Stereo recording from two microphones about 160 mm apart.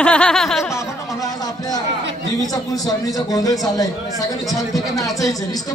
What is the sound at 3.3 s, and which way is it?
Speech, 20° left (ahead or behind).